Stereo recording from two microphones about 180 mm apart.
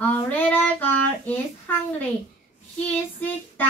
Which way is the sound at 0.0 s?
10° left (ahead or behind).